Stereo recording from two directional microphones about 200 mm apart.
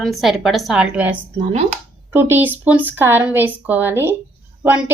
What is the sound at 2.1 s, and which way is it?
A woman's voice, 10° right (ahead or behind).